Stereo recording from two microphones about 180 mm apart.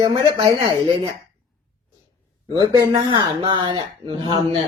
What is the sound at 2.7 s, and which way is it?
Speech, 25° right (ahead or behind).